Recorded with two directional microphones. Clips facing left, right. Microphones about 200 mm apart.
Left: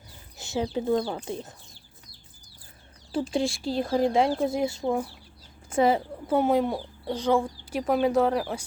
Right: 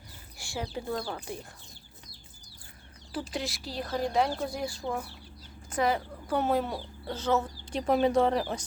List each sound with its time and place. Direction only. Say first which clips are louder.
0.3 s speech: left 8 dB; 20° left (ahead or behind)
3.1 s speech: left 8 dB; 25° left (ahead or behind)
6.4 s speech: left 4 dB; 10° left (ahead or behind)